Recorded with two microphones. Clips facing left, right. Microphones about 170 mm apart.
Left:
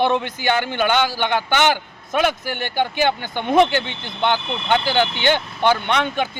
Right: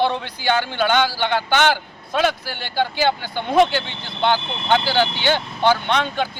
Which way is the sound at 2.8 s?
15° left (ahead or behind).